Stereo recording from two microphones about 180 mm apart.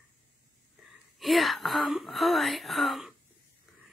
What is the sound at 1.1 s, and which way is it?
Speech, centre (ahead or behind).